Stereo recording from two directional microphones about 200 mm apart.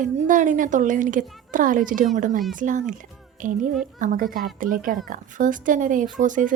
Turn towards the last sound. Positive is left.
turn(degrees=-40)  # may be behind; listen again after turning